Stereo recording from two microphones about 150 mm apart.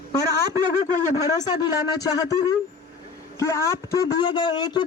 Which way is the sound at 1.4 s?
25° left (ahead or behind).